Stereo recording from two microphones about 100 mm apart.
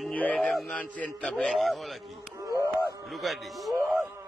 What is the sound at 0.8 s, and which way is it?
Speech, 15° left (ahead or behind).